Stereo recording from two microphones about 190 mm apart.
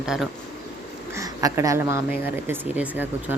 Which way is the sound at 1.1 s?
15° right (ahead or behind).